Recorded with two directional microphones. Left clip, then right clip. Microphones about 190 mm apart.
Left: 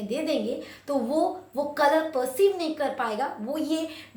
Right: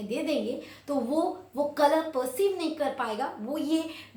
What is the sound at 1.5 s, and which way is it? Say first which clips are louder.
A woman's voice: left 1 dB; 15° left (ahead or behind).